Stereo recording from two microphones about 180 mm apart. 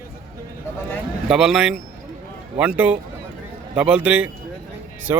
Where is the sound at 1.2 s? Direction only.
5° right (ahead or behind).